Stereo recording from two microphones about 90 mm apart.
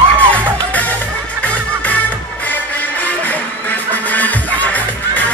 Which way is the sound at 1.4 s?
15° left (ahead or behind).